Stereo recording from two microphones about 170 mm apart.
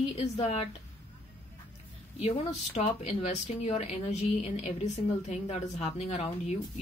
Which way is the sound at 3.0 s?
40° left (ahead or behind).